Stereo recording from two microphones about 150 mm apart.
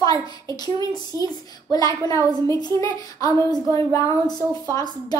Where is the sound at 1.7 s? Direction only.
25° left (ahead or behind).